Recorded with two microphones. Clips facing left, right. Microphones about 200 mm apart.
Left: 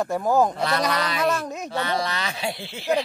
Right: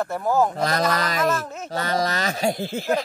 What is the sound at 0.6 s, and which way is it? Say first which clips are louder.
Speech: right 1 dB; 40° right (ahead or behind).